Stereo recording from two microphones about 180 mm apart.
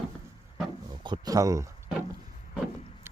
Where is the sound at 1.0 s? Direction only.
25° right (ahead or behind).